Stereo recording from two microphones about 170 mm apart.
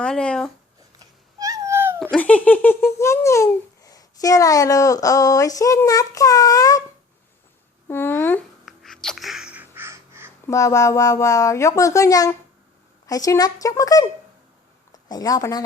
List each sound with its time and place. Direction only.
0.0 s speech: 5° left (ahead or behind)
1.4 s a sound: 20° right (ahead or behind)
2.0 s speech: 5° left (ahead or behind)
7.9 s speech: 10° left (ahead or behind)
8.6 s sneeze: centre (ahead or behind); by 10.3 s 15° right (ahead or behind)
10.4 s a woman's voice: 20° left (ahead or behind)